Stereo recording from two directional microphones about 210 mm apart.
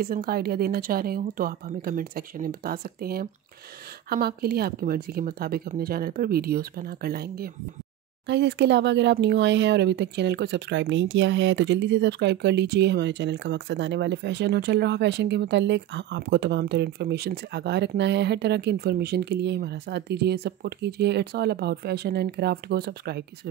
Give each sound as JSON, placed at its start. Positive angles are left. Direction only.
{"t": 0.0, "sound": "speech", "side_deg": -45}